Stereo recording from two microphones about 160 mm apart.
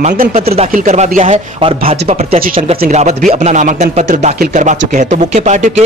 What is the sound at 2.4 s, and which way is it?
Speech, 60° right (ahead or behind).